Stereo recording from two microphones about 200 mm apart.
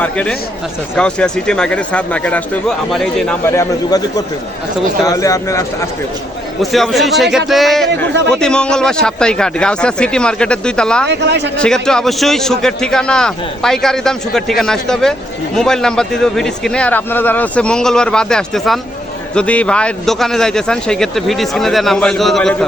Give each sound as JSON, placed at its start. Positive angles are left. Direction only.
{"t": 0.0, "sound": "a man's voice", "side_deg": 5}
{"t": 5.0, "sound": "speech", "side_deg": 15}
{"t": 6.6, "sound": "a man's voice", "side_deg": 0}
{"t": 11.1, "sound": "a man's voice", "side_deg": -60}
{"t": 11.5, "sound": "a man's voice", "side_deg": 5}